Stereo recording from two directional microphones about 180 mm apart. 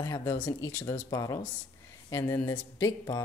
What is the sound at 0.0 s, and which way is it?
A woman's voice, 15° left (ahead or behind).